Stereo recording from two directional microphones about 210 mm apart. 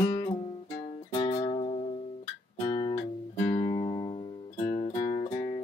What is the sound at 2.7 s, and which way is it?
Guitar, 30° left (ahead or behind).